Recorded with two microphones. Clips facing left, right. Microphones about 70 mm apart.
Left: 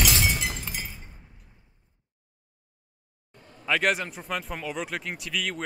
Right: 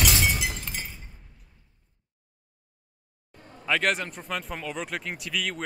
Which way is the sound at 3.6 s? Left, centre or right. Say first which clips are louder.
Left 1 dB; centre.